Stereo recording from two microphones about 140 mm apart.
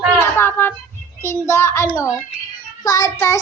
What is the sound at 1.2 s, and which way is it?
Child singing, 20° left (ahead or behind).